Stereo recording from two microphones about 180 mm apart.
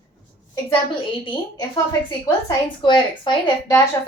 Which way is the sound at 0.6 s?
25° left (ahead or behind).